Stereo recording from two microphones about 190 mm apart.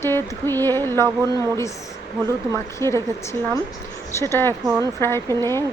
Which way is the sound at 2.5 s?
15° left (ahead or behind).